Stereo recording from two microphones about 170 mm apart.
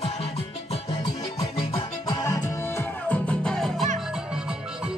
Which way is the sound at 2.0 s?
20° left (ahead or behind).